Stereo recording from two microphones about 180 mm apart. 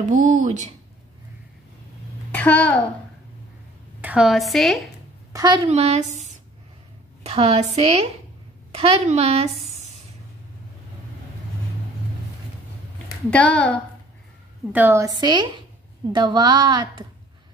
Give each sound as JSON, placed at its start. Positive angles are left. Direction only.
{"t": 0.1, "sound": "speech", "side_deg": -45}
{"t": 2.3, "sound": "a child's voice", "side_deg": 10}
{"t": 4.0, "sound": "a woman's voice", "side_deg": -5}
{"t": 5.3, "sound": "a woman's voice", "side_deg": -25}
{"t": 5.7, "sound": "a woman's voice", "side_deg": -35}
{"t": 13.3, "sound": "a woman's voice", "side_deg": 5}
{"t": 14.7, "sound": "a woman's voice", "side_deg": -10}